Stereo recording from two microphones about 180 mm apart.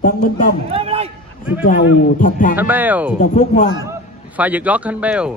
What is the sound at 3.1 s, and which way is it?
Speech, 40° left (ahead or behind).